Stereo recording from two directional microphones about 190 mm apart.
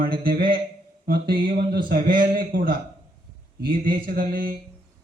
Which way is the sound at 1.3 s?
50° right (ahead or behind).